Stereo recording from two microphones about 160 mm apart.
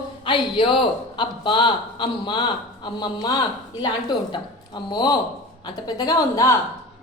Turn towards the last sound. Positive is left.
turn(degrees=20)  # may be behind; listen again after turning